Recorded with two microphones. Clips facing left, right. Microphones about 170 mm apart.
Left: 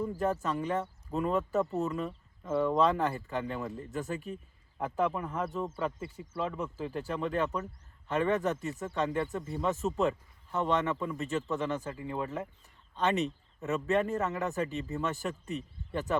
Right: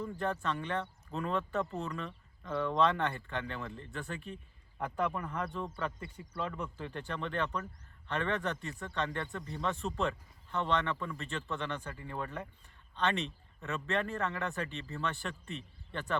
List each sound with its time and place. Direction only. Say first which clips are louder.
0.2 s speech: left 2 dB; 5° left (ahead or behind)
13.8 s speech: left 5 dB; 5° left (ahead or behind)